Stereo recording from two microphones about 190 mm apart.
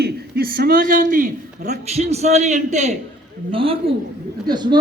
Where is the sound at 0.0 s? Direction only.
55° right (ahead or behind).